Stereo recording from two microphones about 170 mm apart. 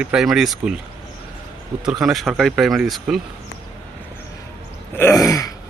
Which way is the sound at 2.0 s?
Centre (ahead or behind).